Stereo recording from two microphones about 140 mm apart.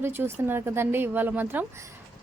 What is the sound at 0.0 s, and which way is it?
A woman's voice, 15° right (ahead or behind).